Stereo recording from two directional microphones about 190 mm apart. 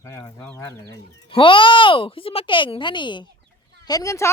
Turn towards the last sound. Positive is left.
turn(degrees=15)  # may be behind; listen again after turning